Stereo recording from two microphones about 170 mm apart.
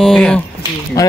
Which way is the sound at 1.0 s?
20° left (ahead or behind).